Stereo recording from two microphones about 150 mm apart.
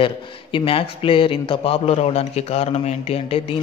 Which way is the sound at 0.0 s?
35° left (ahead or behind).